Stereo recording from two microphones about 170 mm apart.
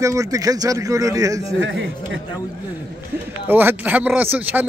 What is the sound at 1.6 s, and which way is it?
Speech, 90° right.